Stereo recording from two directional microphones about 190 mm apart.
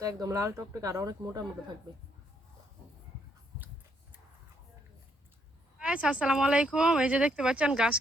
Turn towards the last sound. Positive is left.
turn(degrees=-5)  # may be behind; listen again after turning